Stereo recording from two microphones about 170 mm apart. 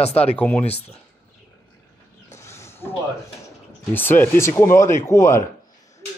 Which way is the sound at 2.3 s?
15° left (ahead or behind).